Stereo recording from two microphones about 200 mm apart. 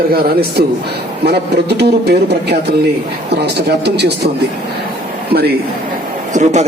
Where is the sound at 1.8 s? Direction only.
55° right (ahead or behind).